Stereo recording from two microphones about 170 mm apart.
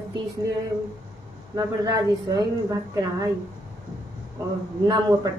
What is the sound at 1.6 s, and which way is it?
Speech, 20° right (ahead or behind).